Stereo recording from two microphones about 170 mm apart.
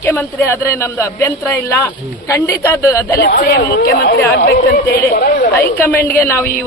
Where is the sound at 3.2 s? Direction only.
65° left (ahead or behind).